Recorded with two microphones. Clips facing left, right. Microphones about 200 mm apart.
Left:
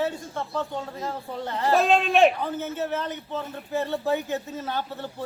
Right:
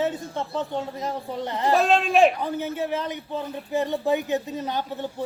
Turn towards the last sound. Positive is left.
turn(degrees=-15)  # may be behind; listen again after turning